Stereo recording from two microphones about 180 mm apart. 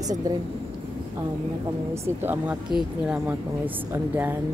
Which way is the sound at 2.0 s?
10° right (ahead or behind).